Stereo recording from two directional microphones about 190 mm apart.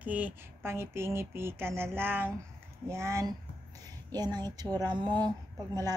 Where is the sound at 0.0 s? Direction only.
10° right (ahead or behind).